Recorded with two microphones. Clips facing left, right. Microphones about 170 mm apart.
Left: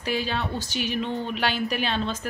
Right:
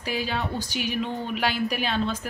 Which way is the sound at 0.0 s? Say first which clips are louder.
Left 1 dB; 10° right (ahead or behind).